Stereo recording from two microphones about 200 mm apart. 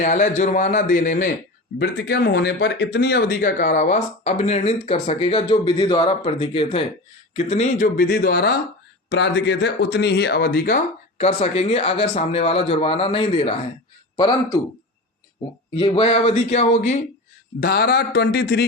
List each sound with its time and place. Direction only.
0.0 s speech: 40° left (ahead or behind)
1.8 s speech: 55° left (ahead or behind)
11.2 s a man's voice: 30° left (ahead or behind)
15.8 s speech: 25° left (ahead or behind)
17.6 s speech: 50° left (ahead or behind)